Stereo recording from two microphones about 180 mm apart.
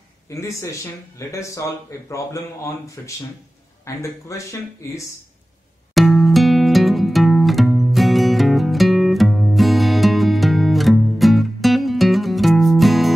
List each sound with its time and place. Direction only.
0.3 s speech: 15° left (ahead or behind)
5.9 s music: centre (ahead or behind)